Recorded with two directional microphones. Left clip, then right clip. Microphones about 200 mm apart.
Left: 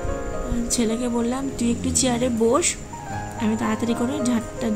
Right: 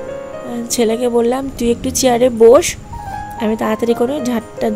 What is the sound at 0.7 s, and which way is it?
Speech, 35° right (ahead or behind).